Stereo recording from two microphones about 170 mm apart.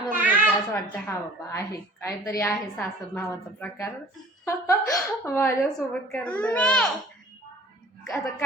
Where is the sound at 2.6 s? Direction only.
5° left (ahead or behind).